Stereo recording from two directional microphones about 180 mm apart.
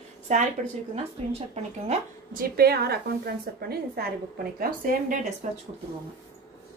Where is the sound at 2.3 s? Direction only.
55° right (ahead or behind).